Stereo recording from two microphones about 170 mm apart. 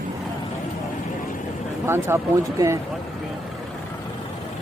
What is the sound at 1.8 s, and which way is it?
Speech, 15° right (ahead or behind).